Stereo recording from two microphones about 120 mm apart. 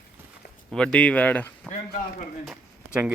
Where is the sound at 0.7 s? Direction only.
10° left (ahead or behind).